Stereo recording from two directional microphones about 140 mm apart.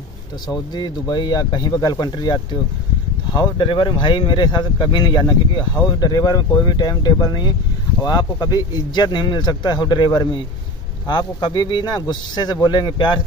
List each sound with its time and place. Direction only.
0.5 s speech: 30° left (ahead or behind)